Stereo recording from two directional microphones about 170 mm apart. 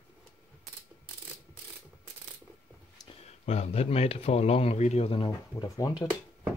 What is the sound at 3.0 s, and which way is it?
Speech, 40° left (ahead or behind).